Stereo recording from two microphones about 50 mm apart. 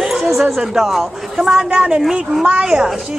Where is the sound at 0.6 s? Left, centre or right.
Centre.